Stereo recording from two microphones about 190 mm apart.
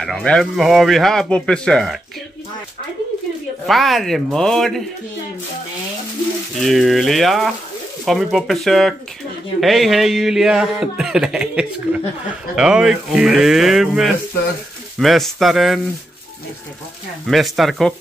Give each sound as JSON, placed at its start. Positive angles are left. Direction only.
{"t": 0.0, "sound": "a man's voice", "side_deg": 5}
{"t": 3.6, "sound": "a man's voice", "side_deg": 0}
{"t": 6.6, "sound": "a man's voice", "side_deg": 0}
{"t": 17.3, "sound": "a man's voice", "side_deg": 0}